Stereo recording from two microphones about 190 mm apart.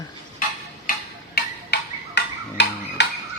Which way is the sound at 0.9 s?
55° left (ahead or behind).